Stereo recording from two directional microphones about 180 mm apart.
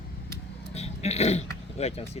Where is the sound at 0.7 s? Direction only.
35° left (ahead or behind).